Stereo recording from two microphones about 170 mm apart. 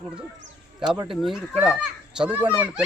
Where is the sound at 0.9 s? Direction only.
30° right (ahead or behind).